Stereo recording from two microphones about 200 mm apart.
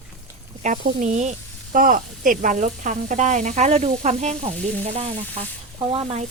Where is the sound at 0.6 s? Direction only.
40° right (ahead or behind).